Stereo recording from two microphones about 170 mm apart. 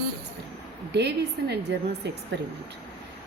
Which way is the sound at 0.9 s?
80° right.